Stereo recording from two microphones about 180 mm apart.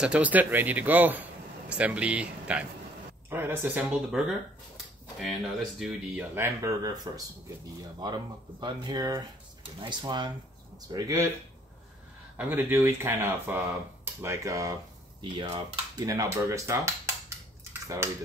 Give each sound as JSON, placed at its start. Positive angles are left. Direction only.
{"t": 0.0, "sound": "speech", "side_deg": -5}
{"t": 6.3, "sound": "speech", "side_deg": -15}
{"t": 12.4, "sound": "speech", "side_deg": -10}